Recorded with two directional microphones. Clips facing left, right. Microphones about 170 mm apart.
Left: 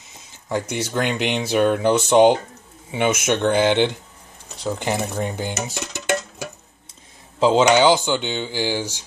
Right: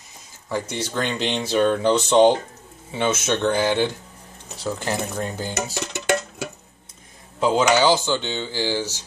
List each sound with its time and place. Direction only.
0.5 s speech: 15° left (ahead or behind)
7.3 s speech: 25° left (ahead or behind)